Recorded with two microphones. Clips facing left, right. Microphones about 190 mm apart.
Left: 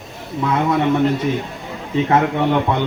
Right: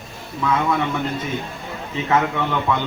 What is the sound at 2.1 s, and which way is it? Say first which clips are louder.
Speech: left 3 dB; 35° left (ahead or behind).